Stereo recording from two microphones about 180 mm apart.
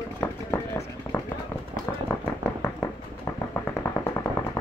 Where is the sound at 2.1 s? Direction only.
15° left (ahead or behind).